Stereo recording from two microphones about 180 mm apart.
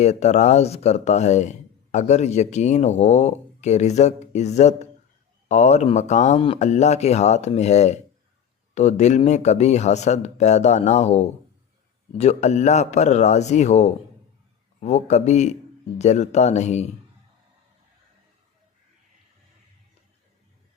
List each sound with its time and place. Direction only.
0.0 s speech: 40° left (ahead or behind)